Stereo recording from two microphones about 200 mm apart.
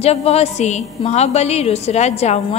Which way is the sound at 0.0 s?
30° left (ahead or behind).